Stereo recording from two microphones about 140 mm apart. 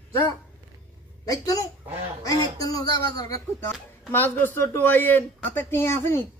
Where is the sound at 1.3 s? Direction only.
25° left (ahead or behind).